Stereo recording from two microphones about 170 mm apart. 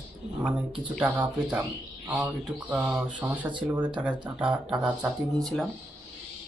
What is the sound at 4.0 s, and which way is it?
Speech, 5° right (ahead or behind).